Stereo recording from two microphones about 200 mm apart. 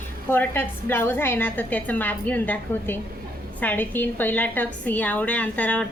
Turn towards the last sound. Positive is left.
turn(degrees=5)  # may be behind; listen again after turning